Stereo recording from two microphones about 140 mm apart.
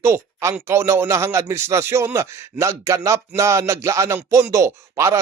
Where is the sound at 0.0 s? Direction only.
20° right (ahead or behind).